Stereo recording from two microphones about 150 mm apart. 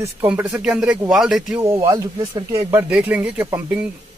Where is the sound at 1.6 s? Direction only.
20° right (ahead or behind).